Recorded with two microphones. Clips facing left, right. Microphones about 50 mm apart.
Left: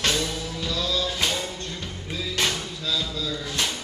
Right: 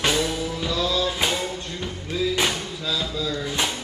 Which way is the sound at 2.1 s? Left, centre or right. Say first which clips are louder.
Right 4 dB; centre.